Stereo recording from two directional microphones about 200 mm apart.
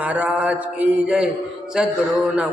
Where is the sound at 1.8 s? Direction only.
5° right (ahead or behind).